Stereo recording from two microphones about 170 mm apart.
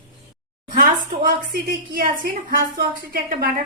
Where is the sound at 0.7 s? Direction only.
55° right (ahead or behind).